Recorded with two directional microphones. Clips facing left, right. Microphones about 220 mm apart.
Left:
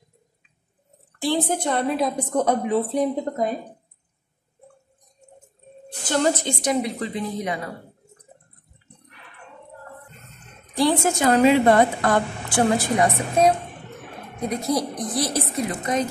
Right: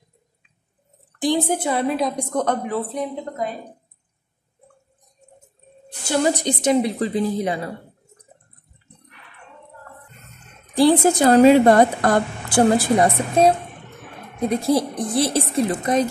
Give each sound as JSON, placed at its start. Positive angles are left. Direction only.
{"t": 1.2, "sound": "a woman's voice", "side_deg": -10}
{"t": 6.0, "sound": "a woman's voice", "side_deg": -10}
{"t": 10.8, "sound": "a woman's voice", "side_deg": -35}
{"t": 14.5, "sound": "a woman's voice", "side_deg": -30}